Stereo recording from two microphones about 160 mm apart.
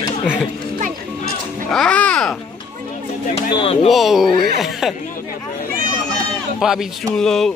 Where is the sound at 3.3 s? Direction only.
35° left (ahead or behind).